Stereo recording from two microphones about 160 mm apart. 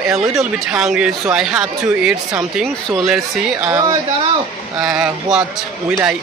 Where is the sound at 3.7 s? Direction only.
25° right (ahead or behind).